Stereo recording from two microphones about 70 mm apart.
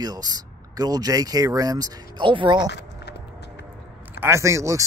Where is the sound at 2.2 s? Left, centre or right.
Right.